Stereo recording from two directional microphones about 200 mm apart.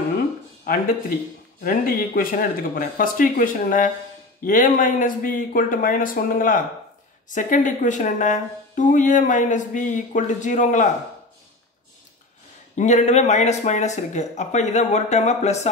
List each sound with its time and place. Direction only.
0.7 s speech: 45° left (ahead or behind)
12.7 s speech: 35° left (ahead or behind)